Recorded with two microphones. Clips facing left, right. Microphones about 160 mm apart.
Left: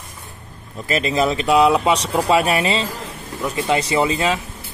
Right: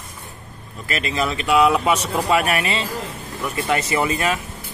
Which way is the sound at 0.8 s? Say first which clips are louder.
Left 5 dB; 35° left (ahead or behind).